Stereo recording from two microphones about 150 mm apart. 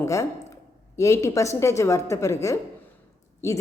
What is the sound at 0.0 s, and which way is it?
A woman's voice, 20° left (ahead or behind).